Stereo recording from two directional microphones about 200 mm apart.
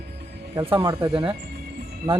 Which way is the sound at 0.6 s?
20° right (ahead or behind).